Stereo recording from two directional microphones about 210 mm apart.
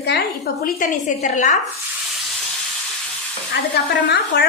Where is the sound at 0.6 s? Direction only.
40° left (ahead or behind).